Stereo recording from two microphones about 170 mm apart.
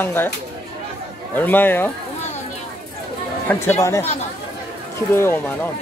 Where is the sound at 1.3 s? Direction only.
10° left (ahead or behind).